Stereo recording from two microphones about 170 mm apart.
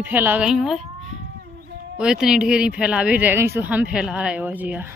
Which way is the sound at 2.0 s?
5° right (ahead or behind).